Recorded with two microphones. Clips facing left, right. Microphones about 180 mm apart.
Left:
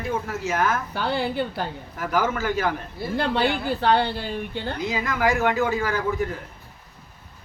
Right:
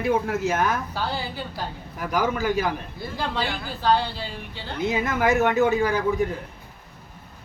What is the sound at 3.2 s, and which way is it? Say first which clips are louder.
A woman's voice: left 5 dB; 60° left (ahead or behind).